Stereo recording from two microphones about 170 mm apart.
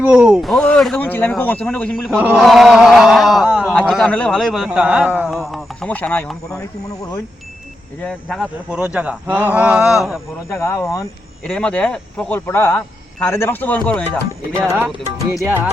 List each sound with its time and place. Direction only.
0.0 s speech: 5° right (ahead or behind)
2.0 s speech: 5° right (ahead or behind)
8.0 s speech: centre (ahead or behind)
10.5 s speech: 15° left (ahead or behind)
11.4 s speech: 5° left (ahead or behind)
15.3 s speech: 10° right (ahead or behind)